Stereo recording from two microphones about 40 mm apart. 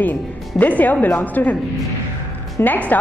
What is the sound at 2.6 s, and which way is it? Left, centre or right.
Speech, left.